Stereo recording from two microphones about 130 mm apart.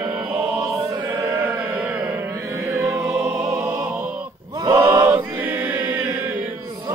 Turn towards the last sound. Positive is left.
turn(degrees=-10)  # may be behind; listen again after turning